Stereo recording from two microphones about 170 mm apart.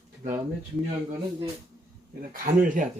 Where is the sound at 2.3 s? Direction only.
55° right (ahead or behind).